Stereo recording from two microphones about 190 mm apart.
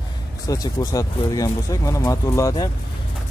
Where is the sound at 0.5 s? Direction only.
20° left (ahead or behind).